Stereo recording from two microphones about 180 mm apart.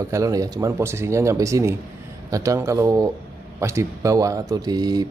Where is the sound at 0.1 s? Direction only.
20° right (ahead or behind).